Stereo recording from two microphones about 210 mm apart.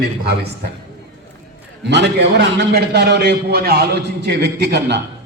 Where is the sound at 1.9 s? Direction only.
55° right (ahead or behind).